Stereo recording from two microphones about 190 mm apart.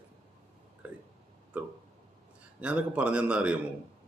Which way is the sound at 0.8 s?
5° right (ahead or behind).